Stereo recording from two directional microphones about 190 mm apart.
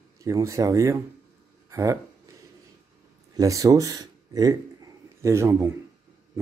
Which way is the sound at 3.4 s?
20° right (ahead or behind).